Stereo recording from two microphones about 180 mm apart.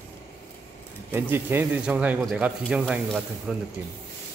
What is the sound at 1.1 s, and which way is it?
Speech, 10° right (ahead or behind).